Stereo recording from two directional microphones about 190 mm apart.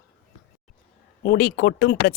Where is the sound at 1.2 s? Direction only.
50° left (ahead or behind).